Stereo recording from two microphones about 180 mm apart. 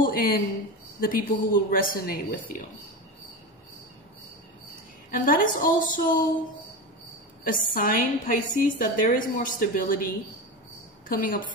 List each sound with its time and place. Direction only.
0.0 s a sound: 55° left (ahead or behind)
1.0 s a woman's voice: 50° left (ahead or behind)
5.1 s a woman's voice: 50° left (ahead or behind)
7.4 s a woman's voice: 50° left (ahead or behind)